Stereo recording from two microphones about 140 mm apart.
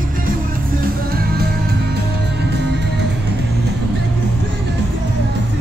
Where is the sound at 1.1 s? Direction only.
90° right.